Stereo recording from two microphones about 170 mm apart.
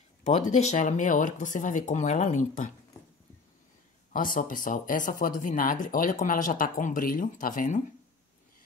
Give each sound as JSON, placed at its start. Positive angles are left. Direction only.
{"t": 0.2, "sound": "speech", "side_deg": 40}
{"t": 4.1, "sound": "speech", "side_deg": 55}